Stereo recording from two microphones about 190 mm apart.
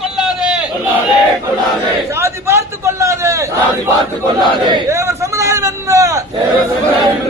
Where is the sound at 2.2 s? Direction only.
15° right (ahead or behind).